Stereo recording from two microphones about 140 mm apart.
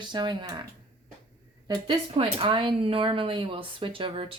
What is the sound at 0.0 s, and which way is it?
Speech, 30° right (ahead or behind).